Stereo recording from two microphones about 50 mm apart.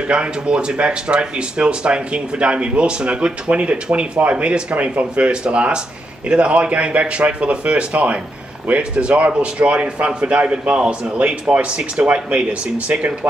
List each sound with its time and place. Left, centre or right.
0.1 s speech: centre